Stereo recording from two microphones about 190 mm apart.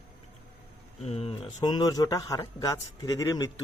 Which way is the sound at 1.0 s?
30° left (ahead or behind).